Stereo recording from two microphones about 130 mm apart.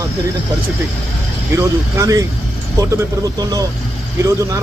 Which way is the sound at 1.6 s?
25° right (ahead or behind).